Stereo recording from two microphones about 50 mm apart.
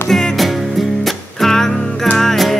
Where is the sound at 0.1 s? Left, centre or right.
Centre.